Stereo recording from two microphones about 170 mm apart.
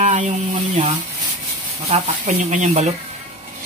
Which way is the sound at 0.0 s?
45° right (ahead or behind).